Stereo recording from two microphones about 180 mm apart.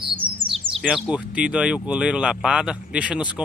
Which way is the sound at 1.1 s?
5° right (ahead or behind).